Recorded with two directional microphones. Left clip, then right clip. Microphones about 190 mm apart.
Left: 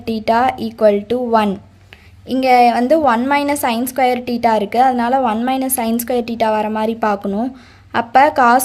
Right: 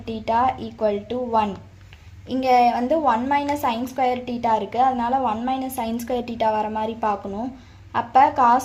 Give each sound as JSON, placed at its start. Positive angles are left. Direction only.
{"t": 0.0, "sound": "a woman's voice", "side_deg": 40}
{"t": 2.2, "sound": "a woman's voice", "side_deg": 30}